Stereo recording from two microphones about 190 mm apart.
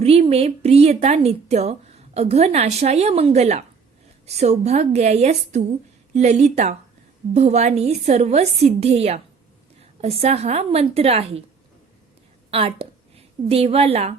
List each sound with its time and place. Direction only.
0.0 s a woman's voice: 30° right (ahead or behind)
12.5 s a woman's voice: 30° right (ahead or behind)